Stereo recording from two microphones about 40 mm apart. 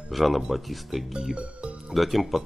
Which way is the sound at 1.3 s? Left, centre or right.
Right.